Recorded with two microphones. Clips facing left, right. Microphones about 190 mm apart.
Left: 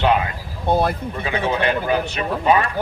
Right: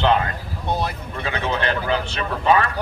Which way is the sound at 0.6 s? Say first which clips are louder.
Left 6 dB; 55° left (ahead or behind).